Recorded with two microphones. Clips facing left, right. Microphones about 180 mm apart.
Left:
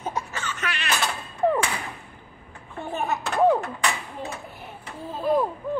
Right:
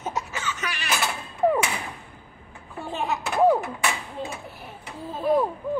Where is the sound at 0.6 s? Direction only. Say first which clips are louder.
Left 2 dB; 5° right (ahead or behind).